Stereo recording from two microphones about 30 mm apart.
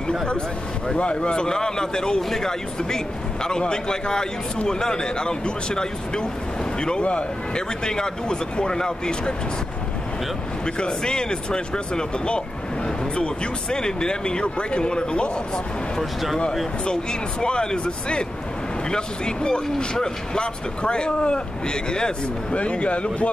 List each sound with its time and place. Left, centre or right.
0.9 s speech: left
7.0 s speech: left
7.5 s speech: left
10.6 s speech: left
13.1 s speech: left
16.0 s speech: centre
16.8 s speech: left
22.5 s a man's voice: left